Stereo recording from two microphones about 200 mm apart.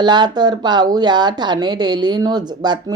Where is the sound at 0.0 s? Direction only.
20° right (ahead or behind).